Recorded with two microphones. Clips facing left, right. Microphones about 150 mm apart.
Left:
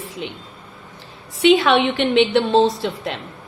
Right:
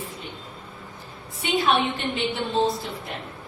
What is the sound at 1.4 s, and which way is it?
A woman's voice, 85° left.